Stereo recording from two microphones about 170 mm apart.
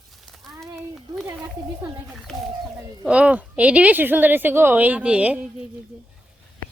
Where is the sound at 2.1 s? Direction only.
Centre (ahead or behind).